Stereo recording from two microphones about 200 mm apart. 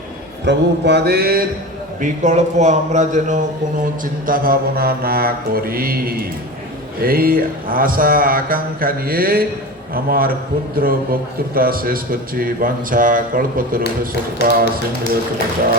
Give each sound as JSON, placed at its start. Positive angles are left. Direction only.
{"t": 0.4, "sound": "mantra", "side_deg": -60}
{"t": 2.0, "sound": "a man's voice", "side_deg": -40}
{"t": 4.0, "sound": "mantra", "side_deg": -45}
{"t": 14.4, "sound": "speech", "side_deg": 55}